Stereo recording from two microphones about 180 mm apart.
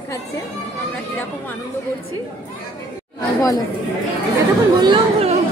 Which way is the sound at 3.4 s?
20° left (ahead or behind).